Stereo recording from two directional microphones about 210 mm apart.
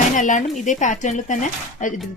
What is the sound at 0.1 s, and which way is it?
A woman's voice, 35° left (ahead or behind).